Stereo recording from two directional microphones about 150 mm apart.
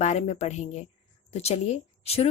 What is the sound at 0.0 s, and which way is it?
Speech, 50° left (ahead or behind).